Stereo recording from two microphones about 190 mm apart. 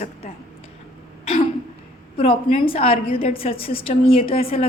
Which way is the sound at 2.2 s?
30° left (ahead or behind).